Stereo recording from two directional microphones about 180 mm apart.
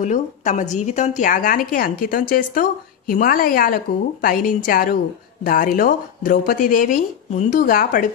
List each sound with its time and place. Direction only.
0.0 s a woman's voice: 40° left (ahead or behind)